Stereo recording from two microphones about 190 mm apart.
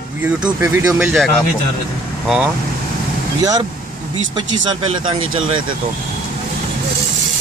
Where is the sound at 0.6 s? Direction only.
5° right (ahead or behind).